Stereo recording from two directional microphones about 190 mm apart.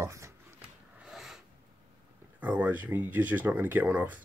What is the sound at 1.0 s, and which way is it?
Filing, centre (ahead or behind).